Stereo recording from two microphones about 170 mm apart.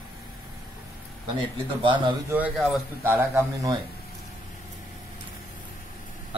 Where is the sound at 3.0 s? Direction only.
10° right (ahead or behind).